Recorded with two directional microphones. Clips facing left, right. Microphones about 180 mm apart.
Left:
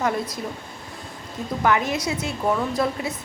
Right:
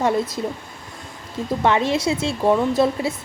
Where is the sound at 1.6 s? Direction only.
25° right (ahead or behind).